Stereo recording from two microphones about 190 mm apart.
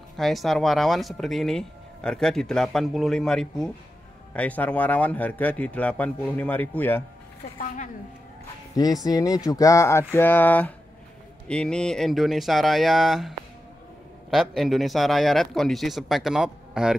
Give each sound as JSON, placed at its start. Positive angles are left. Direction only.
{"t": 0.2, "sound": "speech", "side_deg": 0}
{"t": 8.7, "sound": "speech", "side_deg": 20}
{"t": 14.3, "sound": "speech", "side_deg": 0}